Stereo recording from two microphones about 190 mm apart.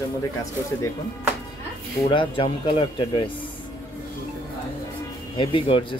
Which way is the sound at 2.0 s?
25° left (ahead or behind).